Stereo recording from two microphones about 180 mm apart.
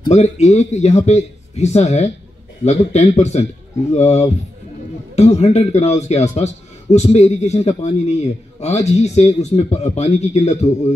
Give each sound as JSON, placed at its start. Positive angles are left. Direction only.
{"t": 0.1, "sound": "a man's voice", "side_deg": 40}